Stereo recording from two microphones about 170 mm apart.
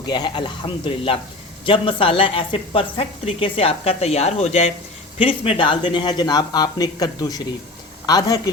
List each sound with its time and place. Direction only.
0.1 s speech: 25° left (ahead or behind)